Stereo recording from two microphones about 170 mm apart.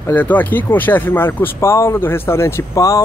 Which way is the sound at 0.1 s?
10° left (ahead or behind).